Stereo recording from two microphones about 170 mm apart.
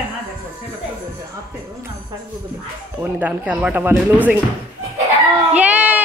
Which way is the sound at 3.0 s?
10° right (ahead or behind).